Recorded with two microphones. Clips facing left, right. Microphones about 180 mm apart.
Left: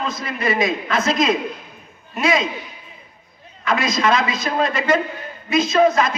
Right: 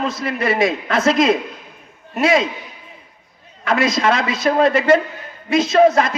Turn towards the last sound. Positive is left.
turn(degrees=-70)  # may be behind; listen again after turning